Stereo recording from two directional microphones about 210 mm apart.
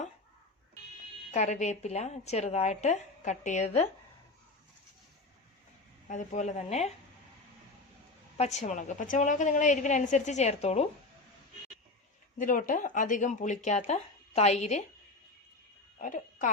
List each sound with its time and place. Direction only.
1.3 s a woman's voice: 35° left (ahead or behind)
6.1 s a woman's voice: 35° left (ahead or behind)
8.4 s a woman's voice: 35° left (ahead or behind)
12.4 s a woman's voice: 40° left (ahead or behind)
16.0 s speech: 40° left (ahead or behind)